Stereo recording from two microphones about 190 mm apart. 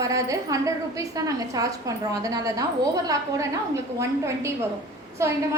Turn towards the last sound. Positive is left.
turn(degrees=-15)  # may be behind; listen again after turning